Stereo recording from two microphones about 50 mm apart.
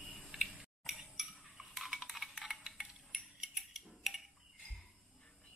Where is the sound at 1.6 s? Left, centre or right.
Centre.